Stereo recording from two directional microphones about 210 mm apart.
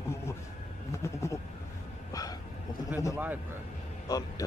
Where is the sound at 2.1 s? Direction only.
15° left (ahead or behind).